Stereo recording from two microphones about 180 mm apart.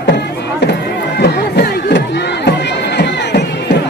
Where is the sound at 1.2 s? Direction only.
65° left (ahead or behind).